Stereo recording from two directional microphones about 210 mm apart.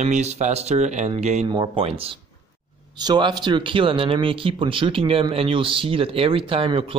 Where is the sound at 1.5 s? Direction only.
25° right (ahead or behind).